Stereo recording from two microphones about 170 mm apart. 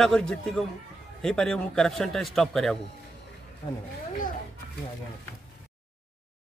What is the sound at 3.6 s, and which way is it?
Speech, 35° left (ahead or behind).